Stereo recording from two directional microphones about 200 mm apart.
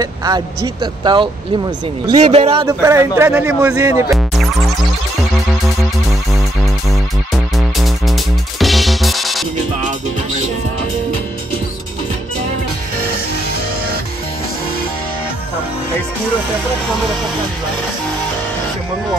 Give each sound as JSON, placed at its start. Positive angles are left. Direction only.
{"t": 0.0, "sound": "speech", "side_deg": -20}
{"t": 2.8, "sound": "speech", "side_deg": -15}
{"t": 6.3, "sound": "music", "side_deg": 0}